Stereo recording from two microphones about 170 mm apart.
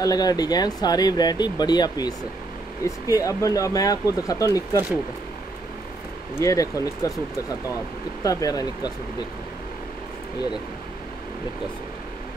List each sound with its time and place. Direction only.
0.0 s speech: 20° left (ahead or behind)
6.3 s speech: 20° left (ahead or behind)